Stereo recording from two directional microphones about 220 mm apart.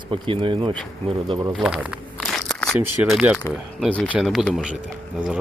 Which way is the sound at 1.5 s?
5° right (ahead or behind).